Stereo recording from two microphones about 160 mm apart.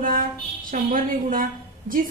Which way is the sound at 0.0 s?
60° right (ahead or behind).